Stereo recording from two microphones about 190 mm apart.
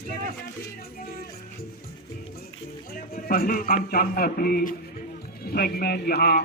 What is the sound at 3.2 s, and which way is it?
Speech, 50° left (ahead or behind).